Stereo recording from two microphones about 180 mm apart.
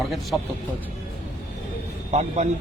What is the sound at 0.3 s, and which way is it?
Speech, 5° right (ahead or behind).